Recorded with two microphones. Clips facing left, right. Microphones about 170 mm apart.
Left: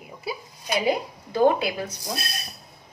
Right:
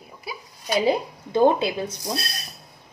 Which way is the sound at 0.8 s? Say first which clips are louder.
Right 2 dB; 25° right (ahead or behind).